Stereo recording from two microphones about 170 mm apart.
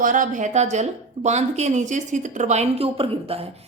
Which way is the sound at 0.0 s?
50° right (ahead or behind).